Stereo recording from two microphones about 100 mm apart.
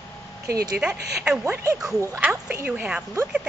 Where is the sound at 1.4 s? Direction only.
30° right (ahead or behind).